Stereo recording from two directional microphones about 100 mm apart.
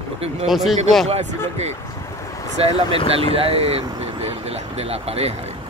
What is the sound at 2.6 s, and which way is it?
Speech, 80° right.